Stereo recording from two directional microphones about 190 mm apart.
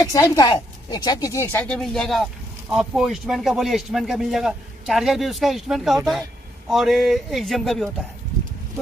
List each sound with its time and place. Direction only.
0.0 s a woman's voice: 15° left (ahead or behind); by 7.9 s centre (ahead or behind)